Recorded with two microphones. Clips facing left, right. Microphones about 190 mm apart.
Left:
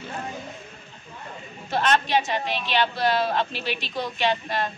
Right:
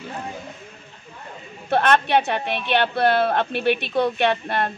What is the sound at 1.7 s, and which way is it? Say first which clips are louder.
Speech: right 4 dB; 60° right (ahead or behind).